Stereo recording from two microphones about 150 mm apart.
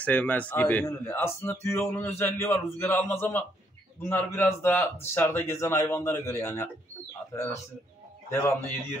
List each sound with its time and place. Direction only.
0.0 s speech: 10° left (ahead or behind)
8.3 s a man's voice: 20° left (ahead or behind)